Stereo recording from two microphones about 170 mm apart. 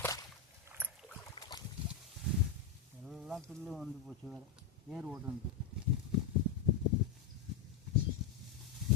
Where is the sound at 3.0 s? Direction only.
Centre (ahead or behind).